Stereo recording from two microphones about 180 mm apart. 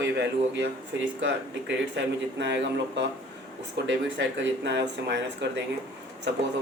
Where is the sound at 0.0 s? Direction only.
75° right (ahead or behind).